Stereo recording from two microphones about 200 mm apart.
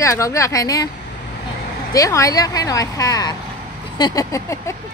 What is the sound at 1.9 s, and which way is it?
Speech, 15° left (ahead or behind).